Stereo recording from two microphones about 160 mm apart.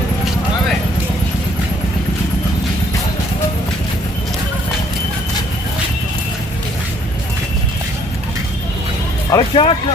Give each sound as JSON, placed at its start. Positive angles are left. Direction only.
{"t": 9.3, "sound": "speech", "side_deg": 35}